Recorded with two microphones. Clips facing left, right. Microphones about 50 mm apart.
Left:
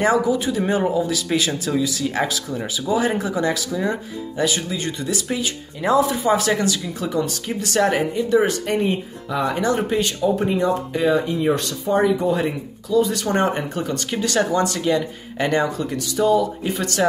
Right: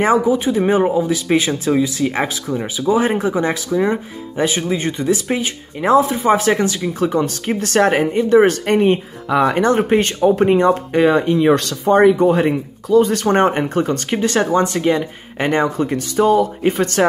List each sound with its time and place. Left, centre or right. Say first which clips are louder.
0.0 s speech: right 4 dB; right